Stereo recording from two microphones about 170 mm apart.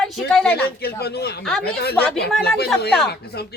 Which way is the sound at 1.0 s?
70° left (ahead or behind).